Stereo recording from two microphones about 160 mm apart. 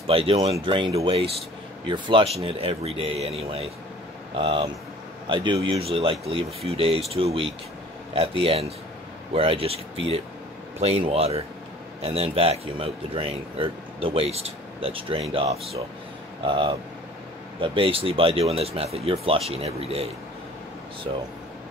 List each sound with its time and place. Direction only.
0.0 s speech: 35° right (ahead or behind)